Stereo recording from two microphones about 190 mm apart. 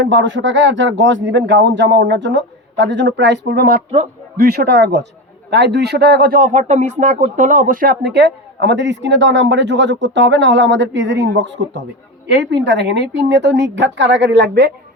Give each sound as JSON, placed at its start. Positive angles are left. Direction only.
{"t": 0.0, "sound": "speech", "side_deg": -70}